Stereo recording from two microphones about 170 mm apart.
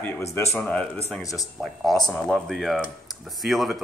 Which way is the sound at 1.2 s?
20° left (ahead or behind).